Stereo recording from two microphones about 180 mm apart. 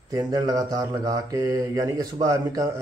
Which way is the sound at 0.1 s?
20° right (ahead or behind).